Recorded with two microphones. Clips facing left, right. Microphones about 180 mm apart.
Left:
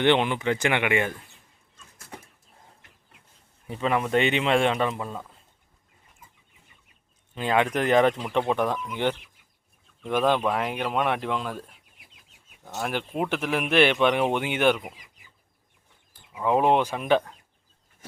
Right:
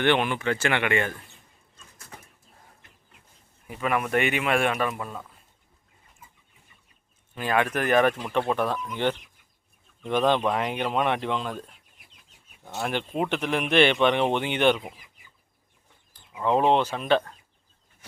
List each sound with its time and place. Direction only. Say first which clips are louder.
0.0 s speech: left 2 dB; 20° left (ahead or behind)
3.7 s speech: left 2 dB; 25° left (ahead or behind)
7.3 s speech: left 1 dB; 20° left (ahead or behind)
12.8 s speech: right 1 dB; 5° left (ahead or behind)
16.3 s speech: even; 10° left (ahead or behind)